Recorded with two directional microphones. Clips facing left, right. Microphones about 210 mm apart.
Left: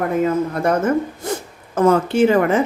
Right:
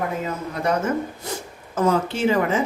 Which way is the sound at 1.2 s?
50° left (ahead or behind).